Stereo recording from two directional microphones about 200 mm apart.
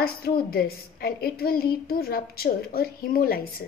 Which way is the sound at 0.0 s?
50° left (ahead or behind).